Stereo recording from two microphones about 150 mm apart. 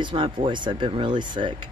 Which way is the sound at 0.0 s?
35° right (ahead or behind).